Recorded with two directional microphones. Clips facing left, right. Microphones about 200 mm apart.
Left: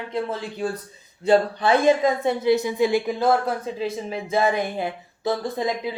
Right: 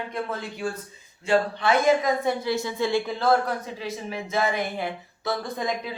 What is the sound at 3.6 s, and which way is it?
A woman's voice, 25° left (ahead or behind).